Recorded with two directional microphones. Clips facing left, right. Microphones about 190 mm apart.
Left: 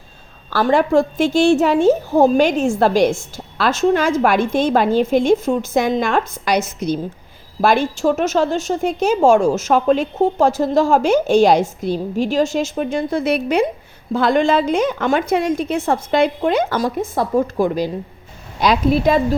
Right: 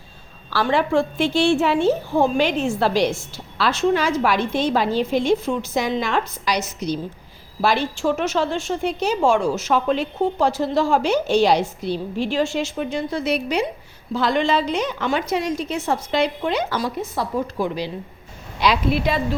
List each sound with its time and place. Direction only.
0.5 s a woman's voice: 45° left (ahead or behind)